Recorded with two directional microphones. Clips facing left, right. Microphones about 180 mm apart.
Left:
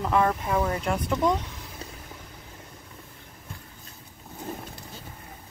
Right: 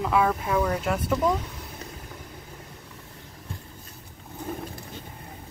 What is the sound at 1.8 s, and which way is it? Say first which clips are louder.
Vehicle: left 1 dB; 30° left (ahead or behind).